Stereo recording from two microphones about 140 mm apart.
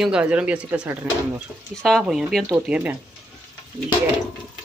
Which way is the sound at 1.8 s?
Centre (ahead or behind).